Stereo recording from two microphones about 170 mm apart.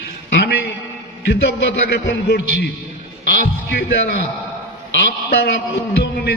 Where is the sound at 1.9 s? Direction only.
70° left (ahead or behind).